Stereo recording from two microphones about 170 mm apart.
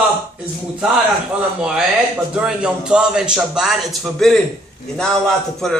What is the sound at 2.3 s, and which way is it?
A man's voice, 5° right (ahead or behind).